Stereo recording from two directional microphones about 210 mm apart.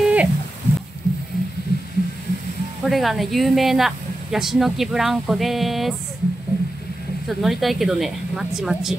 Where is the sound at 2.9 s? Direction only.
Centre (ahead or behind).